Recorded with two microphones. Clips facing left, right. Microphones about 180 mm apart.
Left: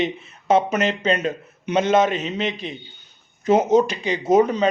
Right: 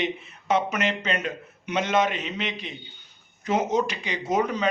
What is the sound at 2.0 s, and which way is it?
Speech, 40° left (ahead or behind).